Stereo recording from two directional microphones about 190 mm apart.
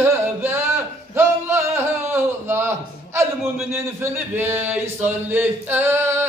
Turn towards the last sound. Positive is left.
turn(degrees=-10)  # may be behind; listen again after turning